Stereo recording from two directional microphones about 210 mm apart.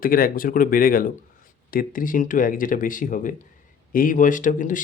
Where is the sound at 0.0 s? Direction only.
40° left (ahead or behind).